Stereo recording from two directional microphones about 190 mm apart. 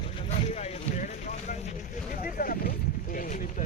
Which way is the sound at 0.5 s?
40° left (ahead or behind).